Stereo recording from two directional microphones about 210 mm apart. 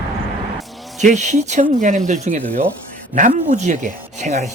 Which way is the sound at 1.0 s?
35° right (ahead or behind).